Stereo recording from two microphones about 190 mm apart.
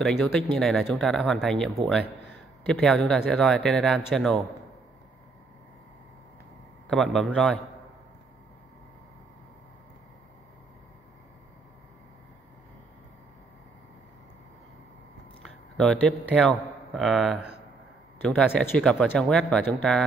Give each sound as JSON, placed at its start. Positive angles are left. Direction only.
{"t": 0.0, "sound": "speech", "side_deg": 5}
{"t": 6.9, "sound": "speech", "side_deg": 0}
{"t": 15.4, "sound": "a man's voice", "side_deg": 0}